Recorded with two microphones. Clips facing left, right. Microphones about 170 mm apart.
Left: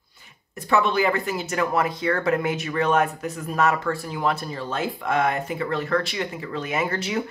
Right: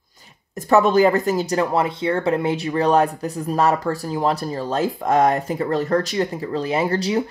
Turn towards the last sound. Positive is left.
turn(degrees=-35)  # may be behind; listen again after turning